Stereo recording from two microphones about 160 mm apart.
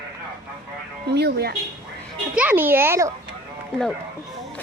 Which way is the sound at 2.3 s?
10° right (ahead or behind).